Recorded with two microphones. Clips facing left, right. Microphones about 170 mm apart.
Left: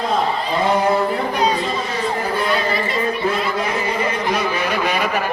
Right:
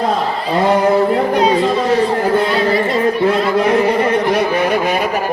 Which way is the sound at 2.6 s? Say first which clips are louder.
Right 6 dB; 70° right (ahead or behind).